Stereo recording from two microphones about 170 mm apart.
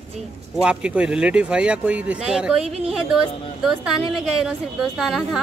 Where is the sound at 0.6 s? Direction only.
5° right (ahead or behind).